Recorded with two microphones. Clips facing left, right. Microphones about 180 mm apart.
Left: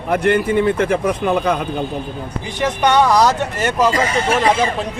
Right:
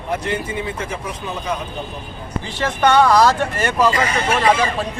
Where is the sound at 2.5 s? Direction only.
15° left (ahead or behind).